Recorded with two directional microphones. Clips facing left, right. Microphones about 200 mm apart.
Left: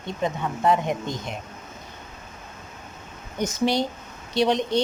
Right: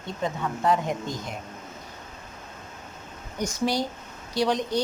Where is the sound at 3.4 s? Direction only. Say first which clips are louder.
Left 3 dB; 20° left (ahead or behind).